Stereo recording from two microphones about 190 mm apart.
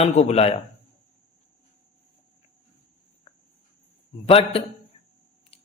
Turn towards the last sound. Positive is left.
turn(degrees=30)  # may be behind; listen again after turning